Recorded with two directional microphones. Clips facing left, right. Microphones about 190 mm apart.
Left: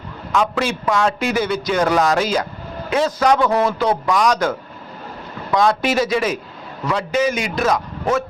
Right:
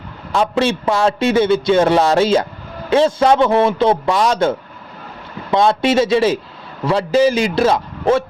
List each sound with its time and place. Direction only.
0.3 s a man's voice: 30° right (ahead or behind)